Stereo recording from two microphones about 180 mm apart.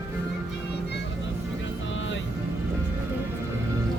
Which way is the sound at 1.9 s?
90° left.